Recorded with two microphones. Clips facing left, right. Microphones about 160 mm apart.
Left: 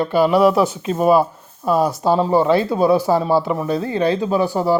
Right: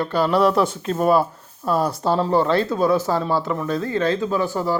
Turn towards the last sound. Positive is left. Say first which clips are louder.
# left 4 dB
turn(degrees=15)  # may be behind; listen again after turning